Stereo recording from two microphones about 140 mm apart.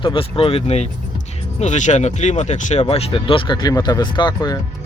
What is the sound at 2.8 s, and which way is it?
Speech, 45° left (ahead or behind).